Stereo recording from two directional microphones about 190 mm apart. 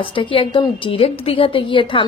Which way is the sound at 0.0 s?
25° left (ahead or behind).